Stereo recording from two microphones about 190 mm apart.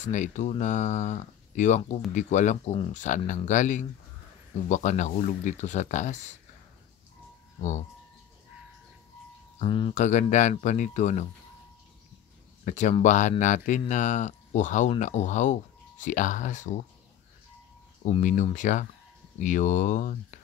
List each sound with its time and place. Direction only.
0.0 s speech: 40° left (ahead or behind)
9.6 s speech: 25° left (ahead or behind)
9.9 s speech: 40° left (ahead or behind)
12.6 s speech: 40° left (ahead or behind)
18.0 s speech: 40° left (ahead or behind)